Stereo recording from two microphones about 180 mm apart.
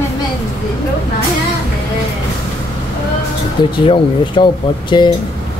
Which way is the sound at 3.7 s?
30° left (ahead or behind).